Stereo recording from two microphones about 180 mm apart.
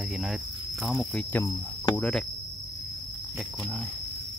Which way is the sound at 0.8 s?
Centre (ahead or behind).